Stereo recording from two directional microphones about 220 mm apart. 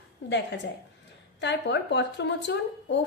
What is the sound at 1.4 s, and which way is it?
A woman's voice, 50° left (ahead or behind).